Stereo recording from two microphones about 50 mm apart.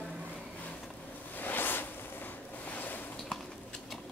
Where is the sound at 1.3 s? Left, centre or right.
Left.